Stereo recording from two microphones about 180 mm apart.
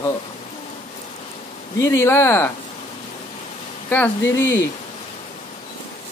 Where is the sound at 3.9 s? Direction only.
10° left (ahead or behind).